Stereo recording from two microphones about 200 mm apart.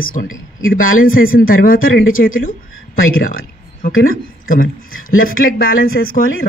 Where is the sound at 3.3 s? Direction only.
45° left (ahead or behind).